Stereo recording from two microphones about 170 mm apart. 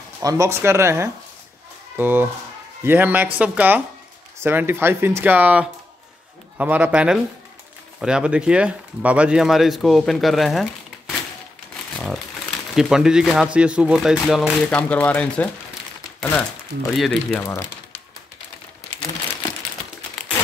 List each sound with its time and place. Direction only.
0.2 s speech: 20° right (ahead or behind); by 17.4 s centre (ahead or behind)
17.4 s speech: 15° left (ahead or behind)